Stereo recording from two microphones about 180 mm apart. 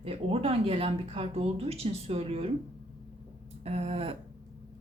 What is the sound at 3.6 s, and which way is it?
Speech, 35° right (ahead or behind).